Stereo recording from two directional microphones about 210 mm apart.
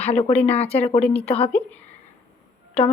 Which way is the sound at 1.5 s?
5° left (ahead or behind).